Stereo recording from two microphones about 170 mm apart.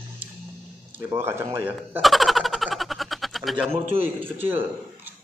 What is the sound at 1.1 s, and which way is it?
Speech, 15° right (ahead or behind).